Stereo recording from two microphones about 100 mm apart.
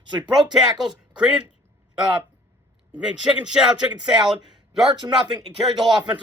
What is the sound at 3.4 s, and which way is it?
Speech, 15° right (ahead or behind).